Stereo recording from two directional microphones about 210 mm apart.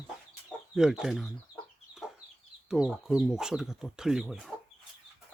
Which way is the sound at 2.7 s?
Centre (ahead or behind).